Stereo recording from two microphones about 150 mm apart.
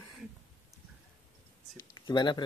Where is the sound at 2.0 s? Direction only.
30° left (ahead or behind).